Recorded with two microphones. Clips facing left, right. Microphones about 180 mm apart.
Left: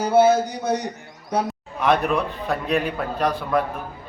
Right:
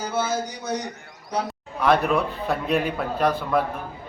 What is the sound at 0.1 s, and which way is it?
Speech, 65° left (ahead or behind).